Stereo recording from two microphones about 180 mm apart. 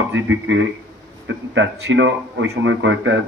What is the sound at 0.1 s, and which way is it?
Speech, 90° right.